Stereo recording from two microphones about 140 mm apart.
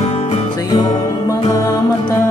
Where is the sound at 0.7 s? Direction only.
25° left (ahead or behind).